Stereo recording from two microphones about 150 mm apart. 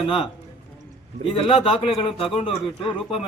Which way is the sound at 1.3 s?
40° left (ahead or behind).